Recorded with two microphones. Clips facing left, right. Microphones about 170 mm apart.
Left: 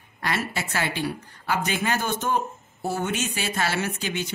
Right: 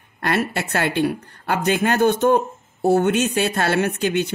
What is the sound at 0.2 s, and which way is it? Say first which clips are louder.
Speech: right 6 dB; 60° right (ahead or behind).